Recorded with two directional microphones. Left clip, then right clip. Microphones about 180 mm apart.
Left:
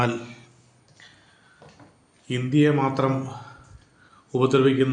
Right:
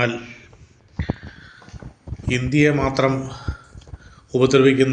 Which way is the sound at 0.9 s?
Centre (ahead or behind).